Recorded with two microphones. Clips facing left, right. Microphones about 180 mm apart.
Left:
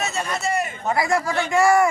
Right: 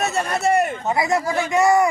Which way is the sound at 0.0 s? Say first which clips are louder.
Right 5 dB; 60° right (ahead or behind).